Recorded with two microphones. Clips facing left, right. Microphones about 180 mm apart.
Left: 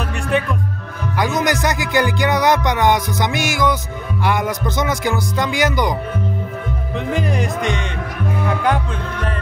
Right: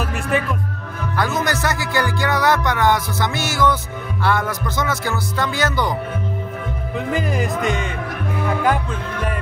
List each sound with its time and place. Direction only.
0.3 s speech: 5° right (ahead or behind)
1.1 s music: 15° left (ahead or behind)
7.1 s speech: centre (ahead or behind)